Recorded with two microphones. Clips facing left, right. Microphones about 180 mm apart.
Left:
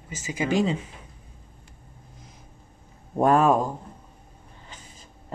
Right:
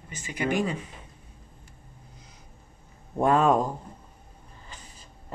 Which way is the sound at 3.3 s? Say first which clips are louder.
Left 1 dB; 5° left (ahead or behind).